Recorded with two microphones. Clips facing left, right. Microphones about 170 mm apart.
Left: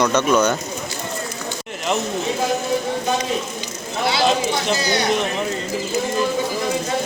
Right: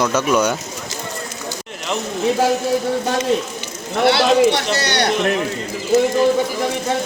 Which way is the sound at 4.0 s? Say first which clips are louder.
Right 6 dB; 65° right (ahead or behind).